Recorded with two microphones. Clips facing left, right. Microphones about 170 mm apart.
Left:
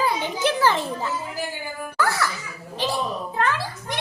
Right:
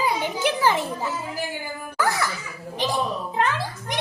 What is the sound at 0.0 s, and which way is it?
Children playing, 15° right (ahead or behind).